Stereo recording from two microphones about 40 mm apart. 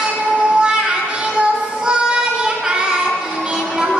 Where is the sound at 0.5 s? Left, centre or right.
Centre.